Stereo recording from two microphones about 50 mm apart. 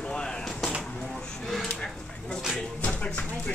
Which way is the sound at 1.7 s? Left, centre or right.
Centre.